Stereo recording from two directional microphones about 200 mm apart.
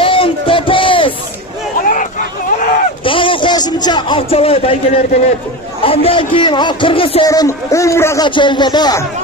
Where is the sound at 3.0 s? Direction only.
25° left (ahead or behind).